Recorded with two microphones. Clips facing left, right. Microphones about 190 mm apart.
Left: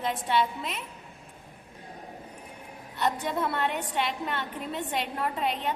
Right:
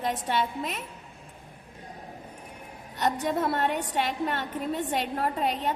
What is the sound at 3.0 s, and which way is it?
A woman's voice, 40° right (ahead or behind).